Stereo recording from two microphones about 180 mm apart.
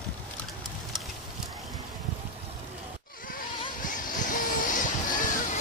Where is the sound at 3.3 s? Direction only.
45° left (ahead or behind).